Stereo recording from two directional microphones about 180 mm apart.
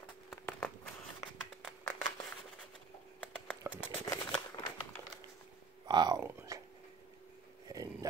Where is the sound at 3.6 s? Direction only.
15° right (ahead or behind).